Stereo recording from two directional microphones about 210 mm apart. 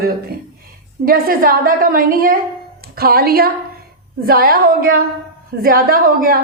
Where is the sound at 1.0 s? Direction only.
45° right (ahead or behind).